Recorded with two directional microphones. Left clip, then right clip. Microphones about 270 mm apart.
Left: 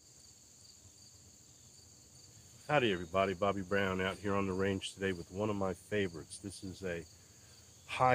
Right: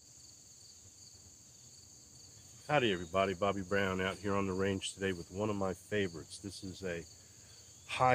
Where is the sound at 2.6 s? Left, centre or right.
Centre.